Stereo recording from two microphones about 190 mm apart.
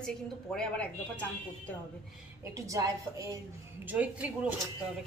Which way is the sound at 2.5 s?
15° right (ahead or behind).